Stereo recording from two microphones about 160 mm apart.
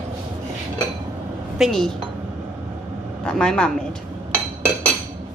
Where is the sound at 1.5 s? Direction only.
Centre (ahead or behind).